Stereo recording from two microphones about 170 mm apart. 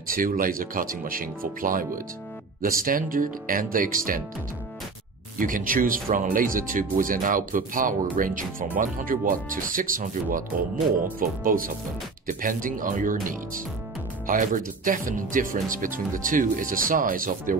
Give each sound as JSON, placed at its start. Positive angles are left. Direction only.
{"t": 0.1, "sound": "speech", "side_deg": -55}
{"t": 5.4, "sound": "speech", "side_deg": -55}